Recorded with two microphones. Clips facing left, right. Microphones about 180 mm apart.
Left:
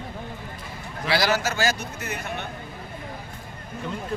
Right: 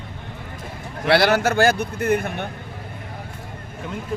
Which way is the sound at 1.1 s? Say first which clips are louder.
Right 6 dB; 60° right (ahead or behind).